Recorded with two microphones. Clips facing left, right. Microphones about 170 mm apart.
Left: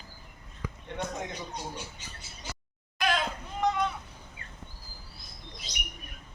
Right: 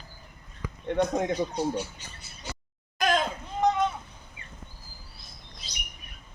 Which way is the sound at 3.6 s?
20° right (ahead or behind).